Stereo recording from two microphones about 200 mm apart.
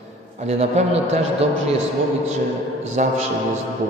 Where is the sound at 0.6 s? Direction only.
30° right (ahead or behind).